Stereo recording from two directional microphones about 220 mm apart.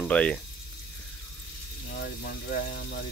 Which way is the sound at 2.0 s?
50° left (ahead or behind).